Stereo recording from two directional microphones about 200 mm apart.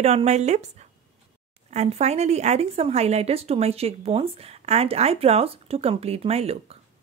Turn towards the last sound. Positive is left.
turn(degrees=-30)  # may be behind; listen again after turning